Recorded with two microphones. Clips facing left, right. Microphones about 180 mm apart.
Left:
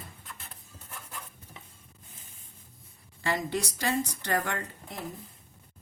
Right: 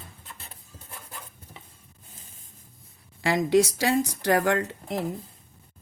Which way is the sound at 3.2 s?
85° right.